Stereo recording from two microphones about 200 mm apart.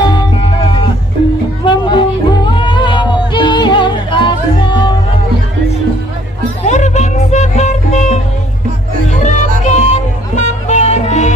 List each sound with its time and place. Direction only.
0.0 s music: 20° left (ahead or behind)
6.6 s music: 35° left (ahead or behind)
9.2 s music: 35° left (ahead or behind)